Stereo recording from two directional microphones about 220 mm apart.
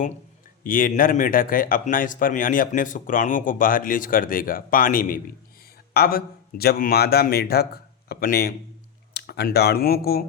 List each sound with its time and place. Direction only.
0.6 s a man's voice: 40° left (ahead or behind)